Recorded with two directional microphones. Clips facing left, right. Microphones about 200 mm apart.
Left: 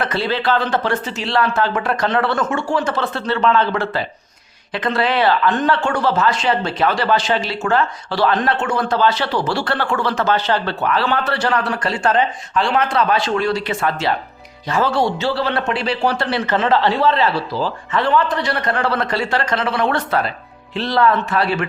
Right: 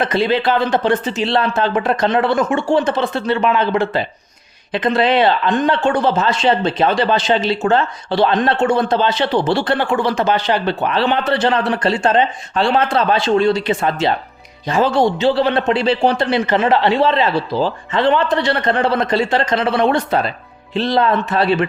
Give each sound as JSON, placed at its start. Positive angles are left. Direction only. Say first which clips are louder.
{"t": 0.0, "sound": "speech", "louder": "right 4 dB", "side_deg": -15}